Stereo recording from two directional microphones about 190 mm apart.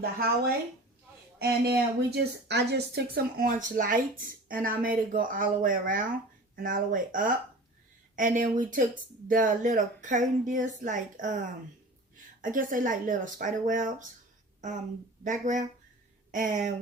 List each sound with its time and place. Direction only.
0.0 s speech: 55° right (ahead or behind)
12.4 s speech: 45° right (ahead or behind)
15.2 s speech: 40° right (ahead or behind)